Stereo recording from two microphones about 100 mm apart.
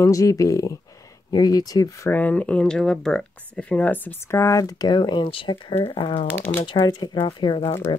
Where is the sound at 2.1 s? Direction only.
15° left (ahead or behind).